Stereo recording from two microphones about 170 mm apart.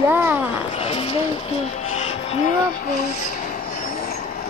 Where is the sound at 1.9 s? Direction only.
40° left (ahead or behind).